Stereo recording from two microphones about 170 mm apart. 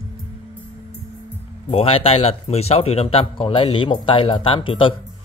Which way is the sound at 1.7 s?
35° left (ahead or behind).